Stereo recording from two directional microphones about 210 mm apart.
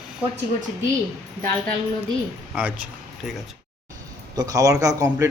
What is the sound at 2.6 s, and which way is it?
Speech, 5° right (ahead or behind).